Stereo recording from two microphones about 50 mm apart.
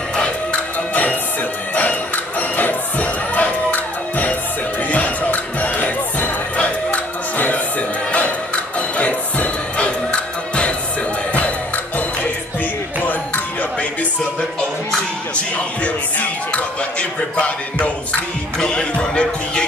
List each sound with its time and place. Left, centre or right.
0.5 s music: left
1.8 s crowd: left
4.8 s music: left
8.7 s music: left
15.3 s music: left